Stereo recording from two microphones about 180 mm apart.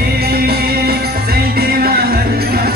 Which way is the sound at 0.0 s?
60° right (ahead or behind).